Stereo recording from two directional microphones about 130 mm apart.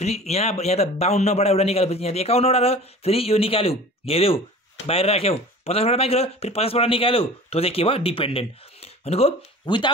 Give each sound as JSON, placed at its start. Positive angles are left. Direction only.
{"t": 0.0, "sound": "speech", "side_deg": 55}